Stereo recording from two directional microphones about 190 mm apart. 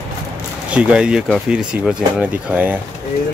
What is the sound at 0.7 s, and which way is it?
Speech, 5° right (ahead or behind).